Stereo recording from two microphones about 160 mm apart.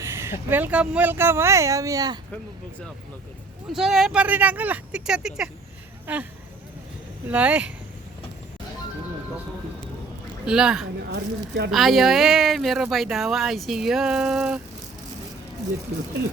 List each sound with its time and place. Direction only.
0.0 s speech: 15° right (ahead or behind)
3.7 s speech: centre (ahead or behind)
7.3 s speech: 10° right (ahead or behind)
10.4 s speech: 5° right (ahead or behind)
11.1 s speech: 90° right
11.7 s speech: centre (ahead or behind)